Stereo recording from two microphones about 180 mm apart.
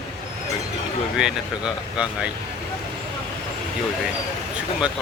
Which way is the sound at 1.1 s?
5° right (ahead or behind).